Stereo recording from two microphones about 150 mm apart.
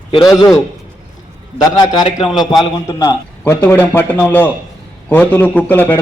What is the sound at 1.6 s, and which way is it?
A man's voice, 30° left (ahead or behind).